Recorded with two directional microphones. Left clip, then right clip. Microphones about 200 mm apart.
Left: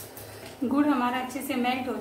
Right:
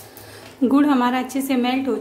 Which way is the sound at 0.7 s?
55° right (ahead or behind).